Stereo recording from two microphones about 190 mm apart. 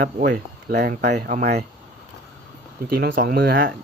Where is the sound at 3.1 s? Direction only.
50° right (ahead or behind).